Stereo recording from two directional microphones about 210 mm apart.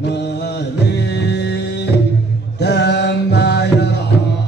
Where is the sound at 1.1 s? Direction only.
55° left (ahead or behind).